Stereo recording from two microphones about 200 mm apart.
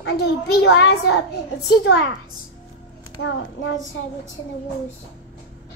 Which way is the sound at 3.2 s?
75° left (ahead or behind).